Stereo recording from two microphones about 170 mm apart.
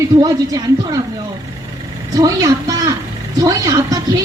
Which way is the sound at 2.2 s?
20° right (ahead or behind).